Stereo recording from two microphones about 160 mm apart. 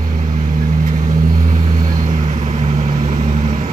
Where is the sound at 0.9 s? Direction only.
55° right (ahead or behind).